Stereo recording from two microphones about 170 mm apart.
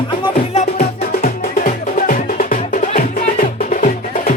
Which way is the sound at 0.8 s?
55° left (ahead or behind).